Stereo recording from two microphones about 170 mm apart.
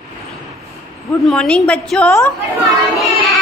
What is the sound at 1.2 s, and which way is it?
Speech, 5° left (ahead or behind).